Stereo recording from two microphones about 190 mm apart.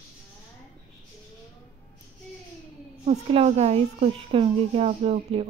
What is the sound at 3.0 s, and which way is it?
A woman's voice, 35° right (ahead or behind).